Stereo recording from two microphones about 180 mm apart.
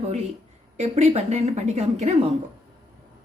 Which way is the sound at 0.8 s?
35° right (ahead or behind).